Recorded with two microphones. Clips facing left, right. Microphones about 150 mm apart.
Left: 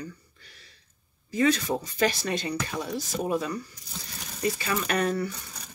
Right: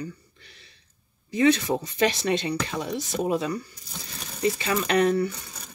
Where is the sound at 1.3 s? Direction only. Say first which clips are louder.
Right 3 dB; 25° right (ahead or behind).